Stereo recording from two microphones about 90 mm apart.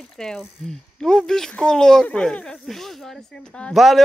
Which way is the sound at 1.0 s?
5° left (ahead or behind).